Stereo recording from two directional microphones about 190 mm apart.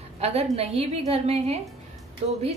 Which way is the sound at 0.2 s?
30° right (ahead or behind).